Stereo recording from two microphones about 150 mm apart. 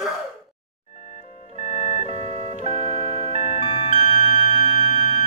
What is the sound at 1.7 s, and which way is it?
Music, 45° left (ahead or behind).